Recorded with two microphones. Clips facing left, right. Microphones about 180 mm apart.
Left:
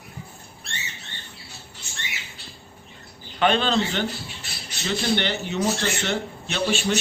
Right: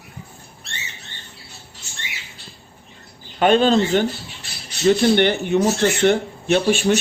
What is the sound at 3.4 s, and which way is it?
Speech, 45° right (ahead or behind).